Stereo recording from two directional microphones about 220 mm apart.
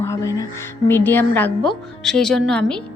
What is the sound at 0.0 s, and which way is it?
A woman's voice, 15° left (ahead or behind).